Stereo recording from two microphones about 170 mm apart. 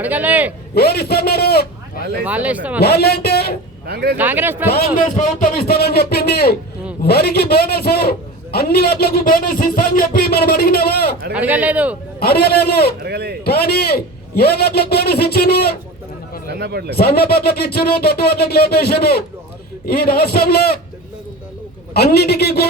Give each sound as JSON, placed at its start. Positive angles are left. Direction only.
{"t": 0.0, "sound": "speech", "side_deg": -10}
{"t": 0.7, "sound": "a man's voice", "side_deg": 65}
{"t": 2.2, "sound": "speech", "side_deg": -10}
{"t": 2.8, "sound": "a man's voice", "side_deg": 70}
{"t": 3.8, "sound": "speech", "side_deg": -65}
{"t": 4.2, "sound": "speech", "side_deg": -10}
{"t": 4.9, "sound": "a man's voice", "side_deg": 50}
{"t": 11.3, "sound": "speech", "side_deg": -10}
{"t": 12.2, "sound": "a man's voice", "side_deg": 65}
{"t": 13.0, "sound": "speech", "side_deg": -75}
{"t": 13.4, "sound": "a man's voice", "side_deg": 65}
{"t": 16.5, "sound": "speech", "side_deg": -70}
{"t": 17.0, "sound": "a man's voice", "side_deg": 65}
{"t": 21.9, "sound": "a man's voice", "side_deg": 70}